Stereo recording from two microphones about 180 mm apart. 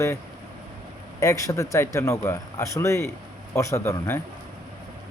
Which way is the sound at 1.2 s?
15° left (ahead or behind).